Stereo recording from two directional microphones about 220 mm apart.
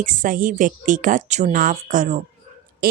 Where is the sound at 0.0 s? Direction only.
35° right (ahead or behind).